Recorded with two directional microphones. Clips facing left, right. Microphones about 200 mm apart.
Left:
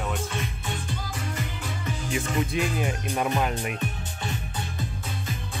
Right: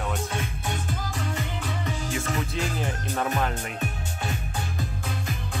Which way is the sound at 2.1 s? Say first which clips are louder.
Left 5 dB; 20° left (ahead or behind).